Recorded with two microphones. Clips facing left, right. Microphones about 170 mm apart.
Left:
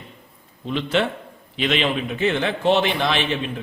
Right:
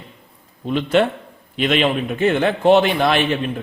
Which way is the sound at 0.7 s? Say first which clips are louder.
Right 5 dB; 50° right (ahead or behind).